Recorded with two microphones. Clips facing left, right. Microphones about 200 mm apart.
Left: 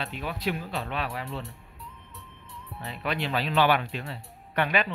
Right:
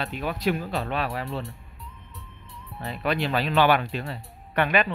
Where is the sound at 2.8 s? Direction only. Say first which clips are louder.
Right 5 dB; 45° right (ahead or behind).